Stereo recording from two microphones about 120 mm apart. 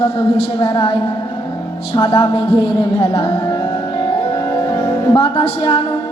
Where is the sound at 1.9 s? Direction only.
45° left (ahead or behind).